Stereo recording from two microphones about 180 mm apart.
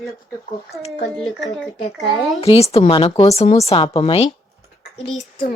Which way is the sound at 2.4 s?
35° left (ahead or behind).